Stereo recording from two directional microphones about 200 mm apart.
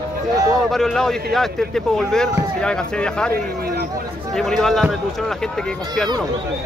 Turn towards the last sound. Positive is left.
turn(degrees=0)  # may be behind; listen again after turning